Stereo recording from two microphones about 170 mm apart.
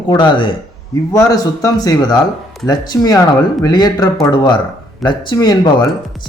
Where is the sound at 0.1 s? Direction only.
30° left (ahead or behind).